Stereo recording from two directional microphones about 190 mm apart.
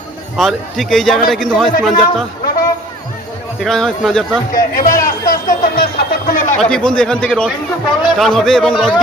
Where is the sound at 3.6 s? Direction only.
Centre (ahead or behind).